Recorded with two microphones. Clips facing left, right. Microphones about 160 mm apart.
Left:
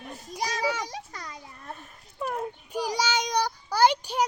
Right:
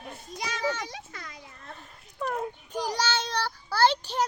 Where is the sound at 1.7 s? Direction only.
10° left (ahead or behind).